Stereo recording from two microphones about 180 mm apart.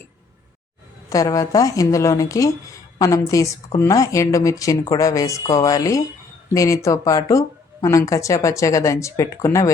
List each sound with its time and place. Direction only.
1.1 s a woman's voice: 20° left (ahead or behind)